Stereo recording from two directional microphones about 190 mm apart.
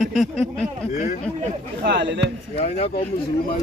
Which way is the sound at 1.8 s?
70° right (ahead or behind).